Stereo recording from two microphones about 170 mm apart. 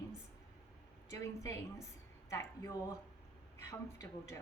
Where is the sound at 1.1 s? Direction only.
15° left (ahead or behind).